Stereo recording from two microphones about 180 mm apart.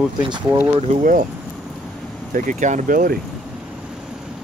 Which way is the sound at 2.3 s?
45° right (ahead or behind).